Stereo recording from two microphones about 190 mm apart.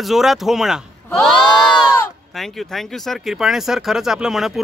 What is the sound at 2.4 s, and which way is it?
Speech, centre (ahead or behind).